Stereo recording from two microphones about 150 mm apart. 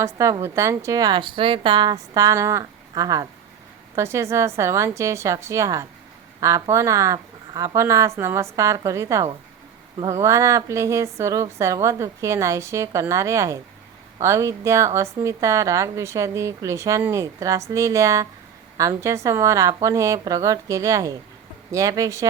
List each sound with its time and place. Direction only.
0.0 s a woman's voice: 20° right (ahead or behind)